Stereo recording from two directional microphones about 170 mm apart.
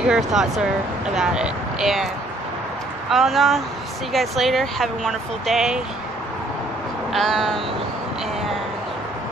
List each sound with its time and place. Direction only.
0.0 s speech: 5° right (ahead or behind)
3.1 s speech: centre (ahead or behind)
7.1 s speech: centre (ahead or behind)